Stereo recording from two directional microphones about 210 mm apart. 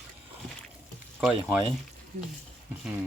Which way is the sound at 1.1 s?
5° right (ahead or behind).